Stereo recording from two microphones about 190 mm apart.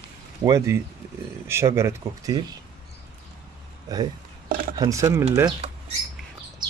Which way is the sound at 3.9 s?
20° right (ahead or behind).